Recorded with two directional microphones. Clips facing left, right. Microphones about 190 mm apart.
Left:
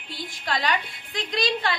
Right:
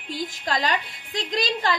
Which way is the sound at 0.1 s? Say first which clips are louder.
Right 3 dB; 40° right (ahead or behind).